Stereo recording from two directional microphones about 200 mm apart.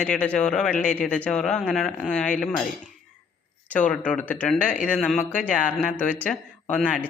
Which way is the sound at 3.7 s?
5° left (ahead or behind).